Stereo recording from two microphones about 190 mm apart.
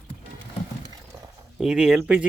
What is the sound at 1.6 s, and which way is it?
Speech, 5° right (ahead or behind).